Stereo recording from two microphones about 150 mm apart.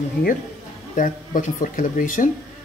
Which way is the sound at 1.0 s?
60° left (ahead or behind).